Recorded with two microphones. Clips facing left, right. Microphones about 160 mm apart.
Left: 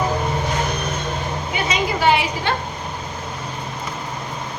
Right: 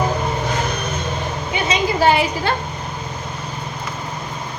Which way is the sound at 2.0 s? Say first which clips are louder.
Right 2 dB; 40° right (ahead or behind).